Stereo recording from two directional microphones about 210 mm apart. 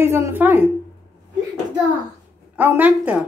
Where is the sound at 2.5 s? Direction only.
10° right (ahead or behind).